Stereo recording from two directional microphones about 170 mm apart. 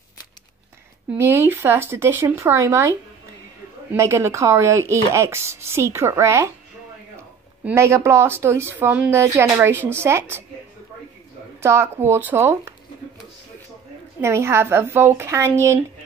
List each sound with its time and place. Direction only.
1.1 s speech: 15° right (ahead or behind)
7.6 s speech: 15° right (ahead or behind)
11.6 s speech: 15° right (ahead or behind)
14.2 s speech: 15° right (ahead or behind)